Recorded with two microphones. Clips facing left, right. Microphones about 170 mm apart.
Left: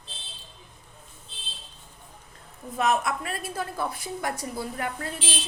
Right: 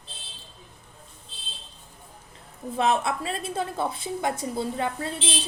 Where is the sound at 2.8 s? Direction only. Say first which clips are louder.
Right 1 dB; 30° right (ahead or behind).